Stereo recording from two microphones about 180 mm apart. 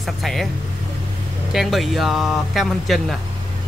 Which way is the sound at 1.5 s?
Centre (ahead or behind).